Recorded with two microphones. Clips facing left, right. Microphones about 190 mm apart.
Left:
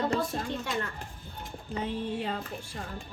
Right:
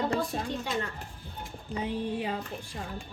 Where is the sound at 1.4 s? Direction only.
15° right (ahead or behind).